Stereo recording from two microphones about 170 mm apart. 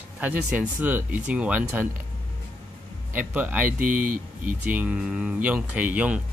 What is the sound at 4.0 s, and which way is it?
Speech, 55° right (ahead or behind).